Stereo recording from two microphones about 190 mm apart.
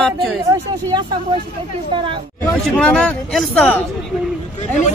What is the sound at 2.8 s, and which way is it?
A man's voice, 5° left (ahead or behind).